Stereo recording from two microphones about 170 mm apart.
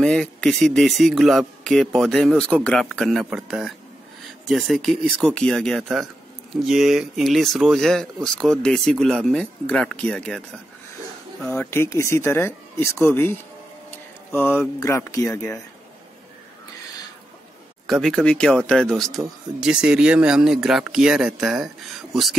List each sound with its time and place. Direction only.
0.0 s speech: 5° left (ahead or behind)
11.4 s speech: 10° left (ahead or behind)
18.0 s speech: 5° left (ahead or behind)